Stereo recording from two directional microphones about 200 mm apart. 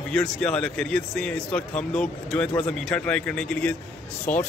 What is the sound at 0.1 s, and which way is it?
Speech, 5° left (ahead or behind).